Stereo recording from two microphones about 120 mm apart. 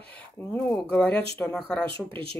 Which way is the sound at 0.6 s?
10° left (ahead or behind).